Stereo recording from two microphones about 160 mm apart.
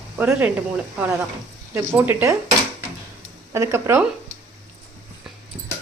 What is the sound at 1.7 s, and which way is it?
Speech, 15° right (ahead or behind).